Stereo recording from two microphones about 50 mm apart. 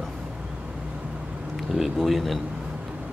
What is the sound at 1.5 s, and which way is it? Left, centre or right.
Speech, centre.